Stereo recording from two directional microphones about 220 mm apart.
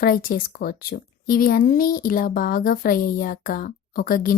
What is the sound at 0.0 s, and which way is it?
Speech, 40° left (ahead or behind).